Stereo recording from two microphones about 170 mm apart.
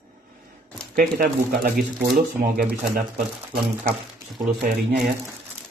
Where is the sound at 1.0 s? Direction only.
60° right (ahead or behind).